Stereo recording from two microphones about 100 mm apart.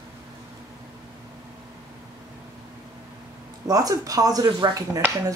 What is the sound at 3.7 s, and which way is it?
Speech, 40° right (ahead or behind).